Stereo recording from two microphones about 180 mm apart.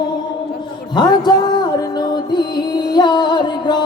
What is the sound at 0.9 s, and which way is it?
Music, 25° left (ahead or behind).